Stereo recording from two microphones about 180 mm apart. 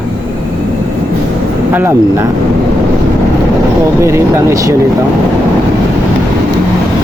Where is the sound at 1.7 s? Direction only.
10° right (ahead or behind).